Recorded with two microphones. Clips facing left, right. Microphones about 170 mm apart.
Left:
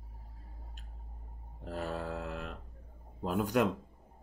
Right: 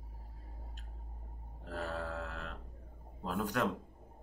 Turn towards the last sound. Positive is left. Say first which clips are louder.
# left 5 dB
turn(degrees=15)  # may be behind; listen again after turning